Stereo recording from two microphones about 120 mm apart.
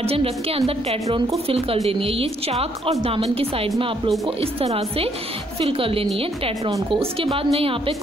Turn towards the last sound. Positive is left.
turn(degrees=-50)  # may be behind; listen again after turning